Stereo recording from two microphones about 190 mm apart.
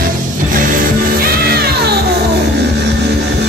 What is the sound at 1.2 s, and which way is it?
Music, 55° right (ahead or behind).